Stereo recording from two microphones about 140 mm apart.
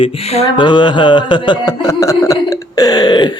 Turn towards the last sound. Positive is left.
turn(degrees=30)  # may be behind; listen again after turning